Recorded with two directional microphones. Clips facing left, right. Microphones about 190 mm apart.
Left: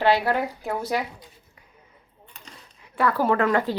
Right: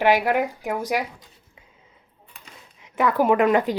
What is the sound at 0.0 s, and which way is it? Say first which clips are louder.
Speech: right 2 dB; 15° right (ahead or behind).